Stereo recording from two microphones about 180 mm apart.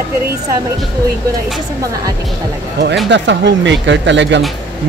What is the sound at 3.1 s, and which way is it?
Speech, 80° right.